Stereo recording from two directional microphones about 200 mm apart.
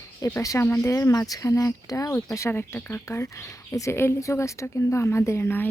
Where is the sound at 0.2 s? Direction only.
15° left (ahead or behind).